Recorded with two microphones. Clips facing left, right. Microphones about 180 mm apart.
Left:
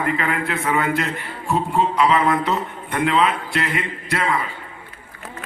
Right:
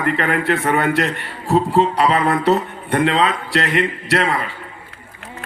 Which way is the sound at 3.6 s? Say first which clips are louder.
Right 6 dB; 70° right (ahead or behind).